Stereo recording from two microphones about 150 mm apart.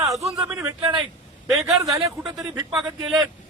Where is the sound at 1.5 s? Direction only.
Centre (ahead or behind).